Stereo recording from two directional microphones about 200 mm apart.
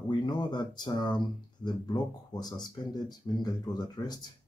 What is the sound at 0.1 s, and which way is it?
Speech, 20° left (ahead or behind).